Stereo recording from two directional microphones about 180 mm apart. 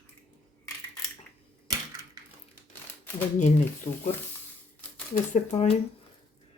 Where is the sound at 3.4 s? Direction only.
40° left (ahead or behind).